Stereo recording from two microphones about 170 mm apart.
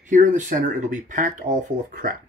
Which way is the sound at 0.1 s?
50° right (ahead or behind).